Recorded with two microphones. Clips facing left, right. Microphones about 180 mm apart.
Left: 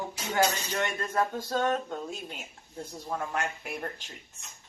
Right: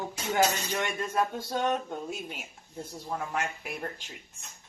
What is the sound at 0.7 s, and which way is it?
Speech, 10° right (ahead or behind).